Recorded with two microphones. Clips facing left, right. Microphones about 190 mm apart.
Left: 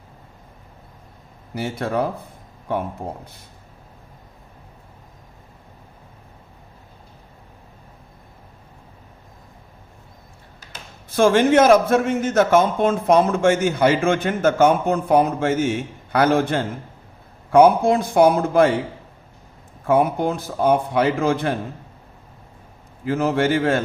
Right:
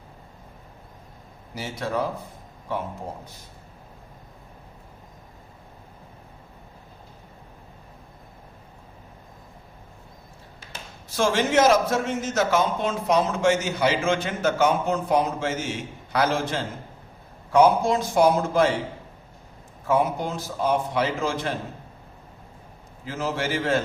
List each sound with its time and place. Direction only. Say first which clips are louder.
1.5 s a man's voice: left 5 dB; 55° left (ahead or behind)
11.1 s a man's voice: left 7 dB; 55° left (ahead or behind)
19.9 s a man's voice: left 5 dB; 60° left (ahead or behind)
23.0 s a man's voice: left 8 dB; 60° left (ahead or behind)